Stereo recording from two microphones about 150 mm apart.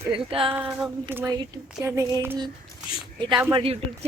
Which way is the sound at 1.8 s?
20° right (ahead or behind).